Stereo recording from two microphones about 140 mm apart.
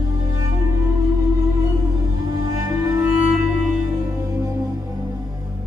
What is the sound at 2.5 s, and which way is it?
Music, 20° right (ahead or behind).